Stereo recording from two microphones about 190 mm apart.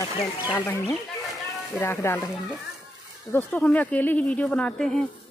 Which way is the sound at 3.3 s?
10° left (ahead or behind).